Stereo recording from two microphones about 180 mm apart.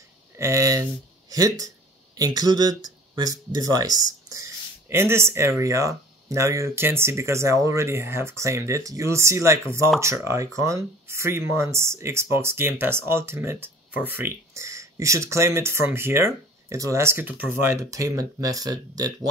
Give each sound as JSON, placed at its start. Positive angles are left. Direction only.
{"t": 0.4, "sound": "speech", "side_deg": -15}